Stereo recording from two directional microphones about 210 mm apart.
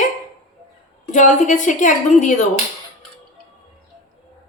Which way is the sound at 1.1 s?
35° left (ahead or behind).